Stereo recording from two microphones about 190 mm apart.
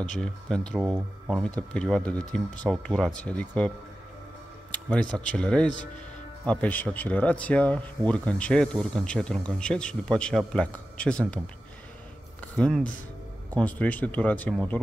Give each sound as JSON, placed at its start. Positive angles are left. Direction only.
{"t": 0.2, "sound": "speech", "side_deg": 5}
{"t": 4.6, "sound": "a sound", "side_deg": 5}
{"t": 5.1, "sound": "speech", "side_deg": 5}
{"t": 12.5, "sound": "speech", "side_deg": 5}